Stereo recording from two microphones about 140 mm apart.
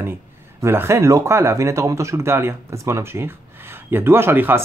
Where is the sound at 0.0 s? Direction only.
15° right (ahead or behind).